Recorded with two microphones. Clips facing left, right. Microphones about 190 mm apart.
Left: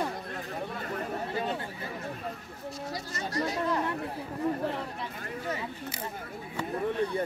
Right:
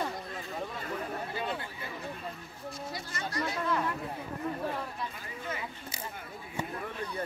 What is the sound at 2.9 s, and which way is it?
Speech, 40° left (ahead or behind).